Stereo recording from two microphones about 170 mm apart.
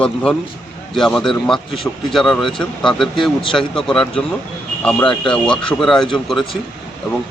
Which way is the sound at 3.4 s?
30° left (ahead or behind).